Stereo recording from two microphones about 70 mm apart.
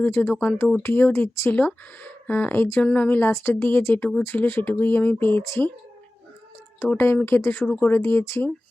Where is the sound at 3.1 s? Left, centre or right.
Left.